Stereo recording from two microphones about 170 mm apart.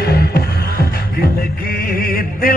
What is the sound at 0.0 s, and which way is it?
Music, 70° left (ahead or behind).